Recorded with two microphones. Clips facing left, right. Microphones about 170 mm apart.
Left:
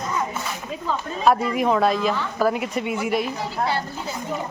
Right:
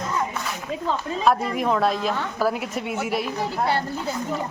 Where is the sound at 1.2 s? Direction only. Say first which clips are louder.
Left 3 dB; centre (ahead or behind).